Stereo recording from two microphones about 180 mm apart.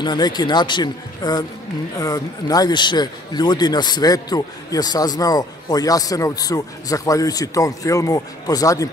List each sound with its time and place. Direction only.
0.0 s a man's voice: 25° left (ahead or behind)